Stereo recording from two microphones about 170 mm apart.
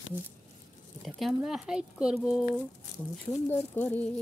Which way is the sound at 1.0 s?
Centre (ahead or behind).